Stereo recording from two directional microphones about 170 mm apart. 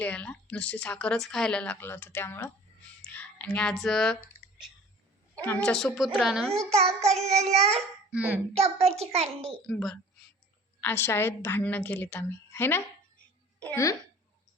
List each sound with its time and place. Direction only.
0.0 s a woman's voice: 10° left (ahead or behind)
3.0 s clicking: 10° left (ahead or behind)
5.5 s a woman's voice: 5° left (ahead or behind)
6.7 s a child's voice: 40° right (ahead or behind)
8.1 s a child's voice: 10° right (ahead or behind)
8.5 s a child's voice: 40° right (ahead or behind)
9.6 s a woman's voice: 5° left (ahead or behind)